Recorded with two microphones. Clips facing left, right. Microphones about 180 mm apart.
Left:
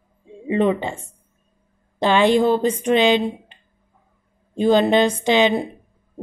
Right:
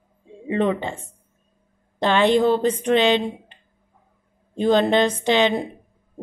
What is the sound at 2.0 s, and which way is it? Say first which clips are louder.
Speech: left 1 dB; 10° left (ahead or behind).